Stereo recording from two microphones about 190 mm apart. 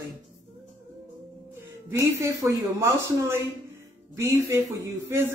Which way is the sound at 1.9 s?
15° right (ahead or behind).